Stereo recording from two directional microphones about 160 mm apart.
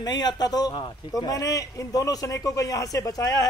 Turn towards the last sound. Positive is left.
turn(degrees=25)  # may be behind; listen again after turning